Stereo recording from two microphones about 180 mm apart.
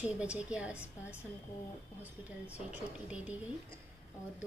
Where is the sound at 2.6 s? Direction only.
5° right (ahead or behind).